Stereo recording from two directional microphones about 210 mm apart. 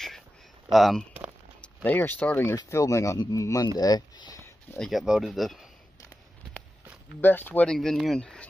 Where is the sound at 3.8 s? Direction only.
20° left (ahead or behind).